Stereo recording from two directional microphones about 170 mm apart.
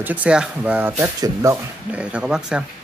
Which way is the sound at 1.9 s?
5° right (ahead or behind).